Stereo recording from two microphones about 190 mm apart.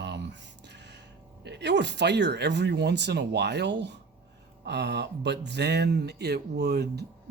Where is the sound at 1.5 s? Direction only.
65° right (ahead or behind).